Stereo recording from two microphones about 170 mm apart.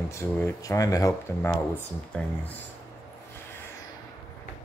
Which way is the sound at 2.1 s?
10° left (ahead or behind).